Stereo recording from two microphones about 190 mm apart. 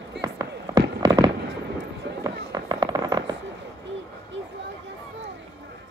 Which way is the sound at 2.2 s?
20° right (ahead or behind).